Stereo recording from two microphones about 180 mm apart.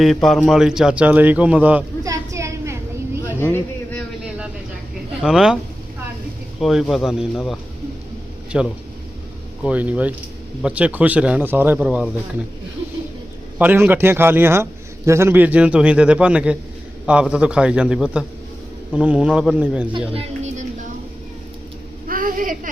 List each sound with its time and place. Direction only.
0.0 s a man's voice: centre (ahead or behind)
2.0 s a sound: 15° right (ahead or behind)
3.2 s vehicle: 10° left (ahead or behind)
5.2 s a man's voice: 5° right (ahead or behind)
6.6 s a man's voice: centre (ahead or behind)
13.6 s a man's voice: 10° right (ahead or behind)
19.9 s speech: 35° right (ahead or behind)
22.0 s a sound: 50° right (ahead or behind)